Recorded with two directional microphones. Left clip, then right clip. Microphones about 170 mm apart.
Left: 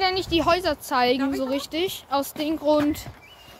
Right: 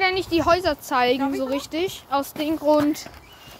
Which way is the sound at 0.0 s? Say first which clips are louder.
Right 1 dB; 5° left (ahead or behind).